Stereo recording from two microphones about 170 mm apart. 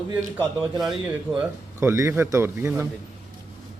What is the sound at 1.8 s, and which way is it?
A man's voice, 15° right (ahead or behind).